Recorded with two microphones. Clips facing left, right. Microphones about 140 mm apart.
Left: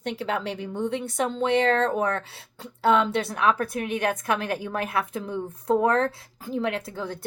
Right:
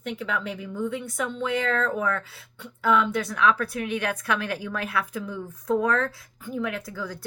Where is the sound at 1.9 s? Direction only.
35° left (ahead or behind).